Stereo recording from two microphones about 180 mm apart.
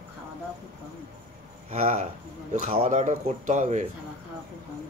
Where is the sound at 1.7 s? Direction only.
40° right (ahead or behind).